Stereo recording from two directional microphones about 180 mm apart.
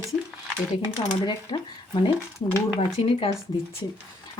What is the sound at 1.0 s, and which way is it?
Speech, 25° left (ahead or behind).